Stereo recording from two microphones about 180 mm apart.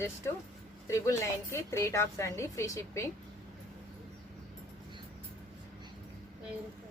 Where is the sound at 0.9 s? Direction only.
15° left (ahead or behind).